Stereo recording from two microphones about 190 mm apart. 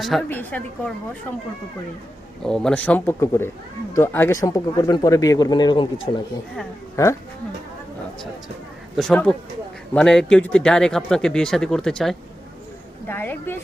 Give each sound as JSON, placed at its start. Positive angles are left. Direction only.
{"t": 0.0, "sound": "a man's voice", "side_deg": 0}
{"t": 6.9, "sound": "speech", "side_deg": 15}
{"t": 9.0, "sound": "a man's voice", "side_deg": 5}